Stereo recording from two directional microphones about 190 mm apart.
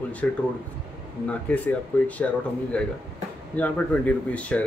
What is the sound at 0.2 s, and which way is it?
Speech, 5° left (ahead or behind).